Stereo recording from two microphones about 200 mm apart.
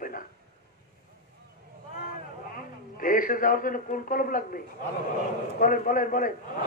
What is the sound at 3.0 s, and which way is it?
A man's voice, 45° left (ahead or behind).